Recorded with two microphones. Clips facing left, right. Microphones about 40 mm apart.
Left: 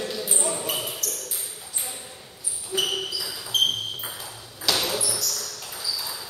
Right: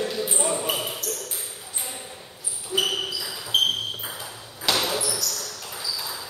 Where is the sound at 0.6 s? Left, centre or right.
Centre.